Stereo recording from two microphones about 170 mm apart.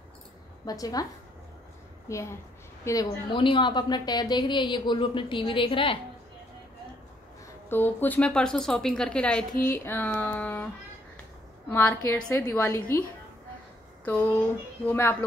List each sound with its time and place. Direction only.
0.7 s a woman's voice: 20° left (ahead or behind)
2.1 s a woman's voice: 15° left (ahead or behind)
7.7 s a woman's voice: 10° left (ahead or behind)
11.7 s speech: 10° left (ahead or behind)
14.9 s speech: 15° left (ahead or behind)